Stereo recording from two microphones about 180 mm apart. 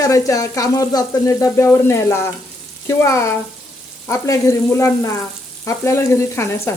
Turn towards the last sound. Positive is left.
turn(degrees=15)  # may be behind; listen again after turning